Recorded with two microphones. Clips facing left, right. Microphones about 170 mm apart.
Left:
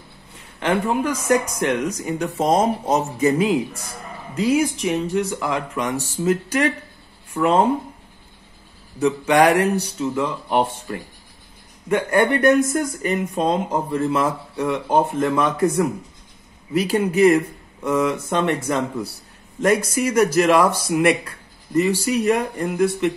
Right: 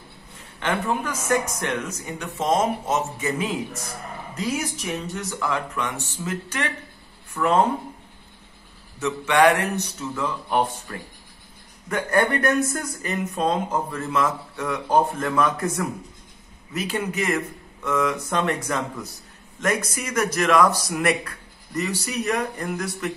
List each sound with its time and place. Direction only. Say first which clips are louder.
0.6 s speech: left 5 dB; 30° left (ahead or behind)
1.6 s speech: left 6 dB; 15° left (ahead or behind)
2.0 s speech: left 4 dB; 40° left (ahead or behind)
9.0 s speech: left 3 dB; 35° left (ahead or behind)
11.9 s speech: left 4 dB; 25° left (ahead or behind)